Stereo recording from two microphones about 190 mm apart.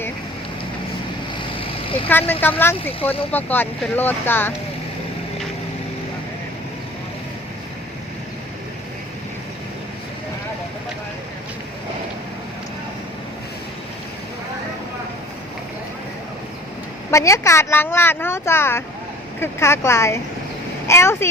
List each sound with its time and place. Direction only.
1.4 s vehicle: 30° left (ahead or behind)
2.0 s speech: 10° left (ahead or behind)
17.1 s speech: 15° left (ahead or behind)